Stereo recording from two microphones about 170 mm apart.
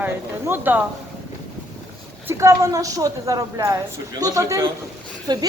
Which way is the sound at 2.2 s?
20° right (ahead or behind).